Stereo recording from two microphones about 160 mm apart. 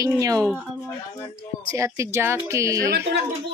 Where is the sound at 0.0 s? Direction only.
20° right (ahead or behind).